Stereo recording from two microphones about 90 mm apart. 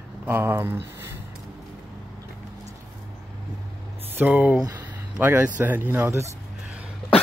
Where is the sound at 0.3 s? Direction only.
25° right (ahead or behind).